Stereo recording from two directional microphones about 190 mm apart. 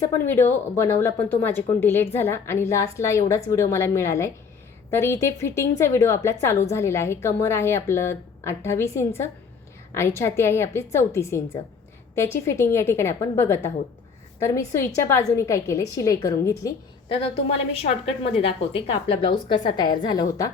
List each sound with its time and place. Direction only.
0.0 s a woman's voice: 15° left (ahead or behind)